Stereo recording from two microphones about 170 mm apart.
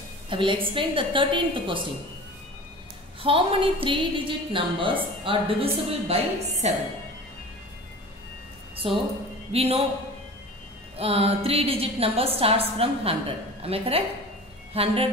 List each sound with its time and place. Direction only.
0.3 s a woman's voice: 30° right (ahead or behind)
3.2 s a woman's voice: 30° right (ahead or behind)
8.8 s a woman's voice: 30° right (ahead or behind)
11.0 s a woman's voice: 35° right (ahead or behind)